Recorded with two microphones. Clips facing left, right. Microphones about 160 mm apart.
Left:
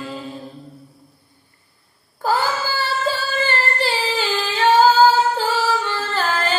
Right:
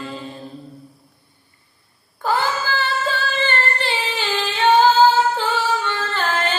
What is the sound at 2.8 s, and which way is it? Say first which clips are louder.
Music: left 3 dB; 35° left (ahead or behind).